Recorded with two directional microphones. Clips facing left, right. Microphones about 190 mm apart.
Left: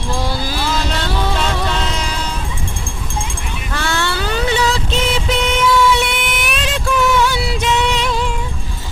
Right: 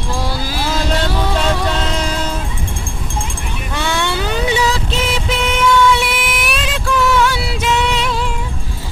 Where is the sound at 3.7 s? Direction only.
15° right (ahead or behind).